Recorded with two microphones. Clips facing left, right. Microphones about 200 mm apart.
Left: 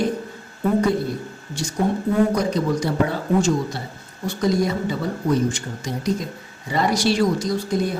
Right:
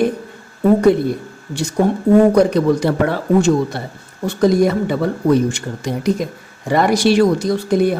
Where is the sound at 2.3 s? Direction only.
60° right (ahead or behind).